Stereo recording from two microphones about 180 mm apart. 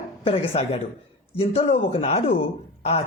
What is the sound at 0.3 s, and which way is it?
Speech, 35° left (ahead or behind).